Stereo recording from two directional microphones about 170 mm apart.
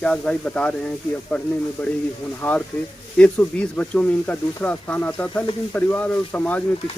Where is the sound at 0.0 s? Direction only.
5° left (ahead or behind).